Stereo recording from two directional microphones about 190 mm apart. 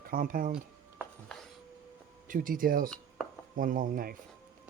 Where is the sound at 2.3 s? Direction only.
45° right (ahead or behind).